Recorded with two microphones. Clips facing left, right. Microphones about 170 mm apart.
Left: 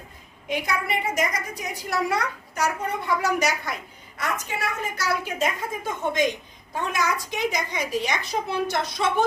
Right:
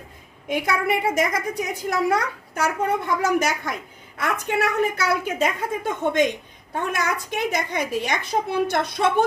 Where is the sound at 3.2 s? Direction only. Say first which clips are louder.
Right 3 dB; 50° right (ahead or behind).